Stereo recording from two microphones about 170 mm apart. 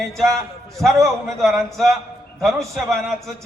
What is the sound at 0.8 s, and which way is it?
A man's voice, centre (ahead or behind).